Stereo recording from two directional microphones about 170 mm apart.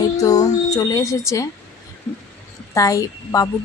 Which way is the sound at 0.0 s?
20° left (ahead or behind).